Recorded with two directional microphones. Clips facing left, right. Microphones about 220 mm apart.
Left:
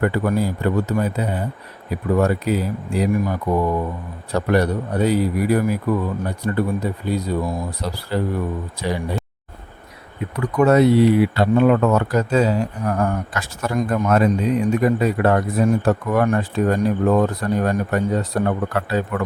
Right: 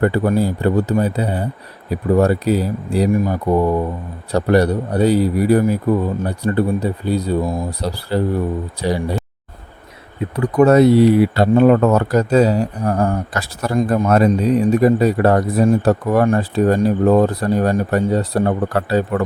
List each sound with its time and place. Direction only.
0.0 s speech: 30° right (ahead or behind)
10.3 s speech: 35° right (ahead or behind)